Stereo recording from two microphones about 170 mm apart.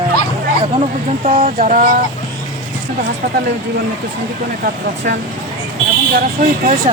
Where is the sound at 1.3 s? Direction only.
50° right (ahead or behind).